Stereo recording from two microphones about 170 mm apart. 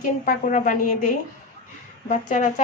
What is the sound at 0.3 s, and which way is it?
Speech, 50° left (ahead or behind).